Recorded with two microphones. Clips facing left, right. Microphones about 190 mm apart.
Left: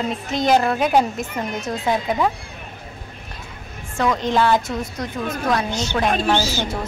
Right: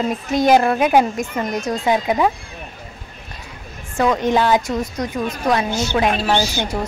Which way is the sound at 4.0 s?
20° right (ahead or behind).